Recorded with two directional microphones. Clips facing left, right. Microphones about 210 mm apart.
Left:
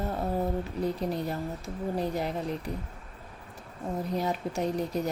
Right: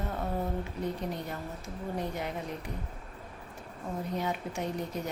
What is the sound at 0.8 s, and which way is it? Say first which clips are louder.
Speech: left 6 dB; 35° left (ahead or behind).